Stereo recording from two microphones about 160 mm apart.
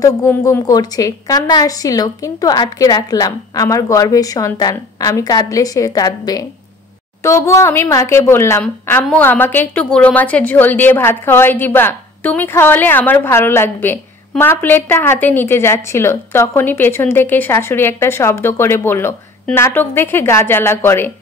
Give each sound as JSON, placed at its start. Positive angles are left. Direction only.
{"t": 0.0, "sound": "a woman's voice", "side_deg": 20}